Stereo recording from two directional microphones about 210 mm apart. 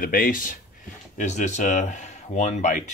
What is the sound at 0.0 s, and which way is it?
Speech, 40° left (ahead or behind).